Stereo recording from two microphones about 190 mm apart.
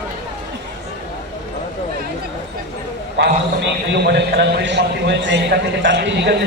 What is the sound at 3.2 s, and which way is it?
A man's voice, 65° right (ahead or behind).